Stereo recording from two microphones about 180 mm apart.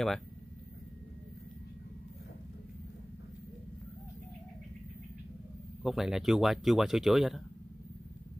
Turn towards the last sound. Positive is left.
turn(degrees=0)  # may be behind; listen again after turning